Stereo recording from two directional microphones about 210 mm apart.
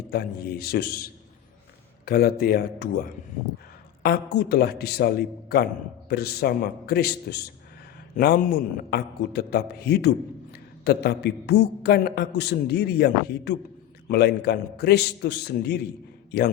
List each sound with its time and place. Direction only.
0.1 s a man's voice: 45° left (ahead or behind)